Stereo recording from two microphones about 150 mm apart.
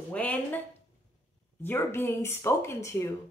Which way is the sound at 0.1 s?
10° left (ahead or behind).